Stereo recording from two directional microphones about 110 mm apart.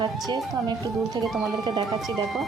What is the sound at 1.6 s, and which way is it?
Speech, 45° right (ahead or behind).